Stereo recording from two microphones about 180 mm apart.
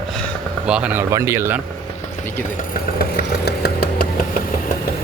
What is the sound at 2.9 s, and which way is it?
Vehicle, 60° left (ahead or behind).